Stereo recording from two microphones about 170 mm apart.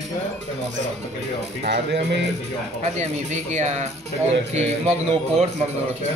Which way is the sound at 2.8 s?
40° right (ahead or behind).